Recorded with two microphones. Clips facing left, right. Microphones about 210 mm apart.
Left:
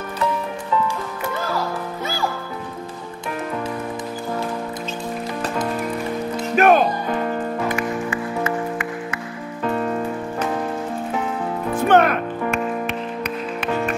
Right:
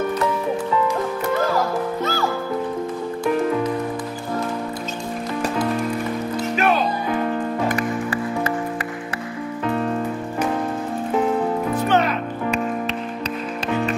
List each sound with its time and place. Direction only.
6.5 s music: 50° left (ahead or behind)
7.6 s music: 35° right (ahead or behind)
11.7 s music: 55° left (ahead or behind)